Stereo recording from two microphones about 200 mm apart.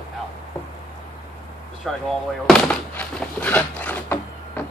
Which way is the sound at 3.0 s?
5° left (ahead or behind).